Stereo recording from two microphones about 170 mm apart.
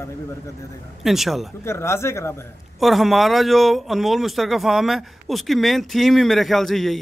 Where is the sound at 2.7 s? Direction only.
Centre (ahead or behind).